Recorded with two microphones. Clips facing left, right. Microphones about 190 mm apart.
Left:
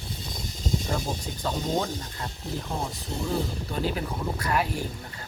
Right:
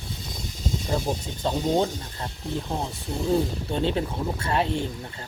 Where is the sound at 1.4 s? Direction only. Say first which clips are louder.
Right 4 dB; 25° right (ahead or behind).